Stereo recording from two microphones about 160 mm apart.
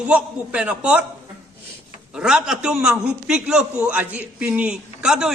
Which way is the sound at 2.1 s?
5° right (ahead or behind).